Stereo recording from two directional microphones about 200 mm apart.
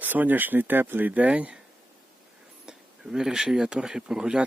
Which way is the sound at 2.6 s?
5° right (ahead or behind).